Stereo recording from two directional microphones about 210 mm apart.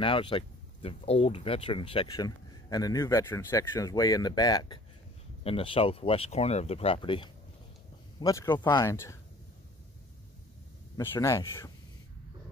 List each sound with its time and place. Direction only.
0.0 s speech: 25° left (ahead or behind)
11.0 s speech: 15° left (ahead or behind)